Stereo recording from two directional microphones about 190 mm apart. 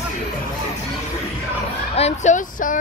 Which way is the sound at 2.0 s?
40° left (ahead or behind).